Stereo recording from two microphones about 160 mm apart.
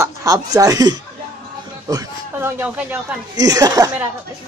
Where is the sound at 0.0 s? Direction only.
20° right (ahead or behind).